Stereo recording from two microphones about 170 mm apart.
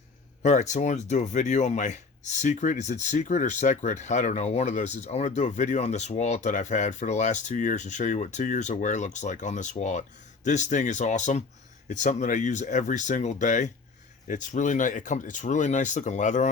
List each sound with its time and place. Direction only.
0.4 s speech: 45° left (ahead or behind)